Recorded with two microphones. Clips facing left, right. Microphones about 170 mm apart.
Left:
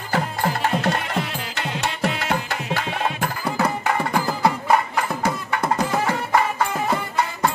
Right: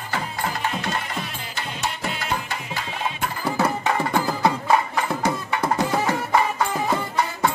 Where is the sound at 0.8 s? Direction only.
65° left (ahead or behind).